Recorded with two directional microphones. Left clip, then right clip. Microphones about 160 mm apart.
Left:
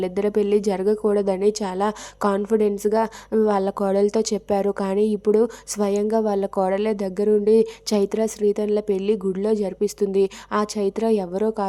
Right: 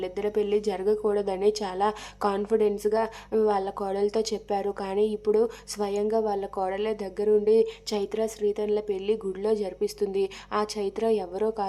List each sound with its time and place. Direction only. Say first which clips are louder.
0.0 s a woman's voice: left 6 dB; 30° left (ahead or behind)